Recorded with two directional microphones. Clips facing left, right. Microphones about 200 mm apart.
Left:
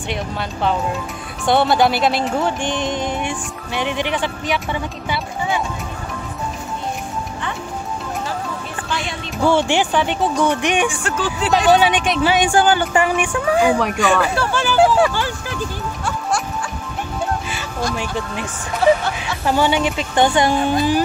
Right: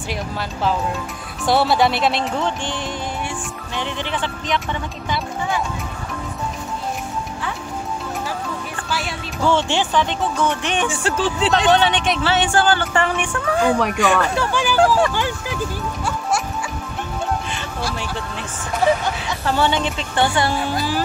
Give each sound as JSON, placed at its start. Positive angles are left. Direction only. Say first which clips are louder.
{"t": 0.1, "sound": "speech", "louder": "left 1 dB", "side_deg": 0}
{"t": 2.3, "sound": "music", "louder": "left 3 dB", "side_deg": 10}
{"t": 9.4, "sound": "music", "louder": "left 3 dB", "side_deg": 15}
{"t": 11.1, "sound": "speech", "louder": "right 2 dB", "side_deg": -25}
{"t": 11.5, "sound": "music", "louder": "left 4 dB", "side_deg": 10}
{"t": 13.7, "sound": "speech", "louder": "left 1 dB", "side_deg": 0}
{"t": 14.5, "sound": "speech", "louder": "even", "side_deg": -15}
{"t": 14.8, "sound": "music", "louder": "left 2 dB", "side_deg": 5}
{"t": 17.9, "sound": "music", "louder": "left 4 dB", "side_deg": 15}